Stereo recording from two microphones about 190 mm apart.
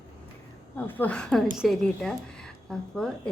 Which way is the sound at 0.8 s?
10° left (ahead or behind).